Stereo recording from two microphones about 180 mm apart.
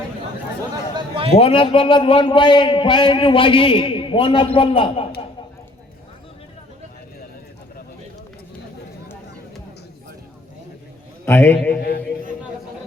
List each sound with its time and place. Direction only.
0.9 s a sound: 30° right (ahead or behind)
1.3 s a man's voice: 30° left (ahead or behind)
11.3 s a man's voice: 10° left (ahead or behind)
11.8 s speech: 60° left (ahead or behind)